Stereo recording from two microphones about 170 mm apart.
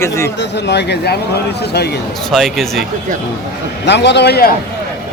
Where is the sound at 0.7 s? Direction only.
85° left.